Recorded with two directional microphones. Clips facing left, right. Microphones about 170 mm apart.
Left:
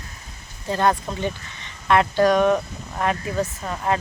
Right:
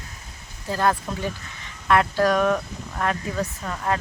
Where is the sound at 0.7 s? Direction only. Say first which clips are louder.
Left 2 dB; centre (ahead or behind).